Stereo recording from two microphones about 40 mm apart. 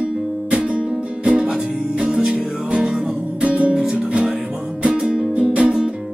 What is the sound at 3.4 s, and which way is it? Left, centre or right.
Music, right.